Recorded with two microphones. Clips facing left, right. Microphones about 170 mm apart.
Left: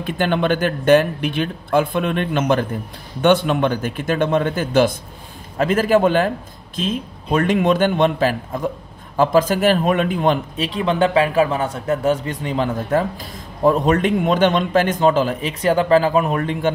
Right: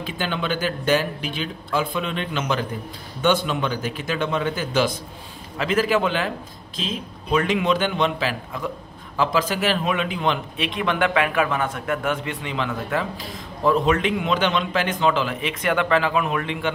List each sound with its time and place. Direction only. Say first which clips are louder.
0.0 s a man's voice: left 7 dB; 55° left (ahead or behind)